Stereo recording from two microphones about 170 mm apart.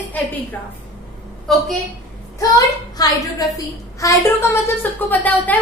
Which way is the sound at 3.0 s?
20° left (ahead or behind).